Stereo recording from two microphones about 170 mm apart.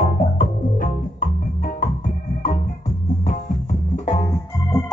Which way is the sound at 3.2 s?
45° left (ahead or behind).